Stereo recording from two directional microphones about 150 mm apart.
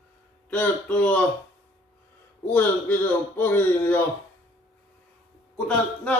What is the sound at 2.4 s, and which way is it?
Speech, 10° left (ahead or behind).